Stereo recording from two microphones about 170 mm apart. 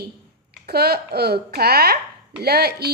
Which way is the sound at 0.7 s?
70° right (ahead or behind).